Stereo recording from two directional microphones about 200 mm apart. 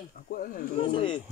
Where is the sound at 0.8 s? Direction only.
25° left (ahead or behind).